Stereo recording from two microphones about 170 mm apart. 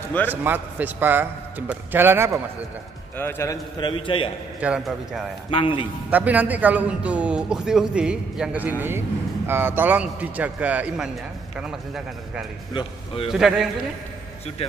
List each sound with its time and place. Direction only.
0.3 s a man's voice: 10° right (ahead or behind)
3.2 s a man's voice: 15° left (ahead or behind)
3.8 s a man's voice: 30° left (ahead or behind)
4.6 s speech: 5° right (ahead or behind)
5.5 s a man's voice: 30° left (ahead or behind)
6.0 s a man's voice: 10° right (ahead or behind)
12.7 s a man's voice: 35° left (ahead or behind)
13.3 s speech: 5° right (ahead or behind)